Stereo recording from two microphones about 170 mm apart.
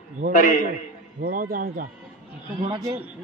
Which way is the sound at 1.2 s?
55° right (ahead or behind).